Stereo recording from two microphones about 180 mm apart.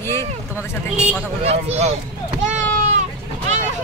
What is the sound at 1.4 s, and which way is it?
Speech, 35° right (ahead or behind).